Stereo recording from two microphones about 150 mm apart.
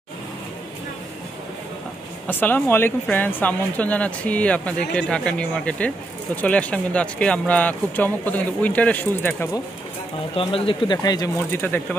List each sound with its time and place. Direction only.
2.2 s speech: 10° left (ahead or behind)
10.3 s speech: 35° left (ahead or behind)
11.0 s speech: 25° left (ahead or behind)
11.5 s speech: 15° left (ahead or behind)